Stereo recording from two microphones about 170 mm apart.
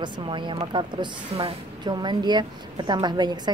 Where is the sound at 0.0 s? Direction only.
30° right (ahead or behind).